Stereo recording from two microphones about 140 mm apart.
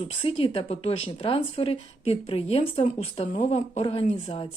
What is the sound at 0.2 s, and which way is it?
Speech, 40° left (ahead or behind).